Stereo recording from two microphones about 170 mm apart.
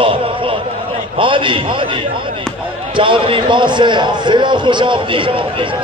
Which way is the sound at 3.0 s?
30° right (ahead or behind).